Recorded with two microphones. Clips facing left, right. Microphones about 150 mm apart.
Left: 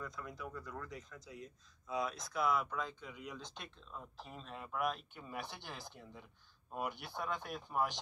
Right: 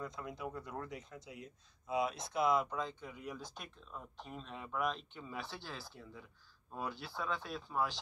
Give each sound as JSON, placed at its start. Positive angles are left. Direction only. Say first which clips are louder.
{"t": 0.0, "sound": "speech", "louder": "right 3 dB", "side_deg": -20}
{"t": 1.3, "sound": "speech", "louder": "even", "side_deg": -10}
{"t": 2.1, "sound": "speech", "louder": "right 2 dB", "side_deg": -25}
{"t": 2.5, "sound": "speech", "louder": "right 3 dB", "side_deg": -15}
{"t": 3.3, "sound": "speech", "louder": "right 4 dB", "side_deg": -5}